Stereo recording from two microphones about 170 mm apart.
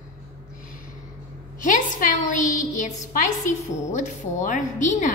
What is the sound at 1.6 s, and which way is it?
A woman's voice, 50° left (ahead or behind).